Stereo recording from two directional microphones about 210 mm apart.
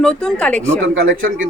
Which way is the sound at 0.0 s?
5° left (ahead or behind).